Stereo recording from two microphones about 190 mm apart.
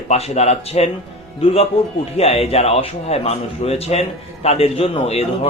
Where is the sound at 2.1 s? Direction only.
30° left (ahead or behind).